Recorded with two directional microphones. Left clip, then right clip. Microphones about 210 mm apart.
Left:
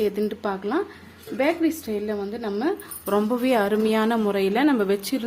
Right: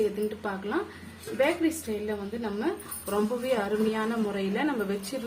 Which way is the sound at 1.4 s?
45° left (ahead or behind).